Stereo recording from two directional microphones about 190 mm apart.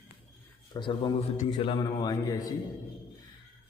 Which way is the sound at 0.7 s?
25° left (ahead or behind).